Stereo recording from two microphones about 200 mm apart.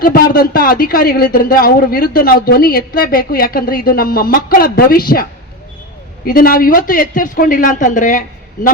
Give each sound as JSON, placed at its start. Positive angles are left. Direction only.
{"t": 0.0, "sound": "speech", "side_deg": 45}
{"t": 6.2, "sound": "speech", "side_deg": 45}